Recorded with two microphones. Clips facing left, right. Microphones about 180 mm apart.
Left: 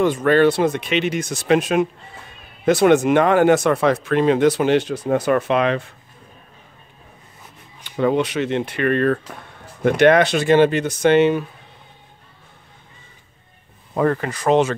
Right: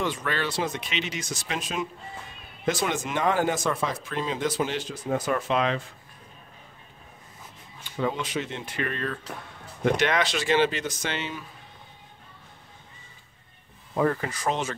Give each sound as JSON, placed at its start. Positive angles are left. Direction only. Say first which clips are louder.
{"t": 0.0, "sound": "speech", "louder": "left 14 dB", "side_deg": 50}
{"t": 8.0, "sound": "speech", "louder": "left 10 dB", "side_deg": 70}
{"t": 13.9, "sound": "speech", "louder": "left 5 dB", "side_deg": 65}